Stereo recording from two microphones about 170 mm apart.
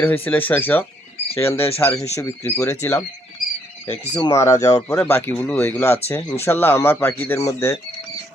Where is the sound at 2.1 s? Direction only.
15° left (ahead or behind).